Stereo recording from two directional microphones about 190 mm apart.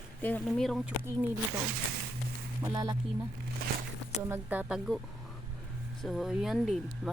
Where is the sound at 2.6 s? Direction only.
20° right (ahead or behind).